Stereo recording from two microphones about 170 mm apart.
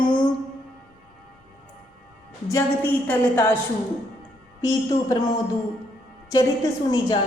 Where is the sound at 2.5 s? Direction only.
15° left (ahead or behind).